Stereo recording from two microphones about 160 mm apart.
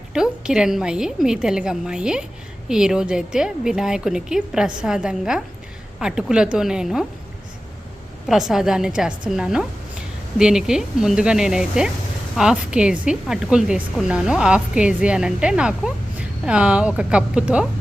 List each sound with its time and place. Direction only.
0.1 s a woman's voice: 5° right (ahead or behind)
8.3 s a woman's voice: centre (ahead or behind)